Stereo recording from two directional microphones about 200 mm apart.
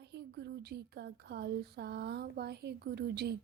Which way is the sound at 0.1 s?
55° right (ahead or behind).